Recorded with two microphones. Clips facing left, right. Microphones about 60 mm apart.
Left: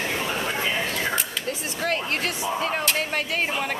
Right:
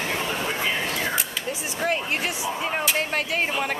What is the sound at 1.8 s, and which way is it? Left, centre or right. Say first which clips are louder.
Speech: right 1 dB; centre.